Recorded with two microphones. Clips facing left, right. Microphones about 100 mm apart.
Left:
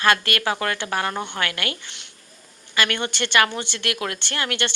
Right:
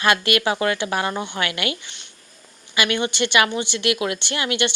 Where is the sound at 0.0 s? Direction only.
15° right (ahead or behind).